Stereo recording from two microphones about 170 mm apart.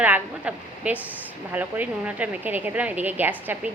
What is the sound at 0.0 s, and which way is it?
A woman's voice, 10° right (ahead or behind).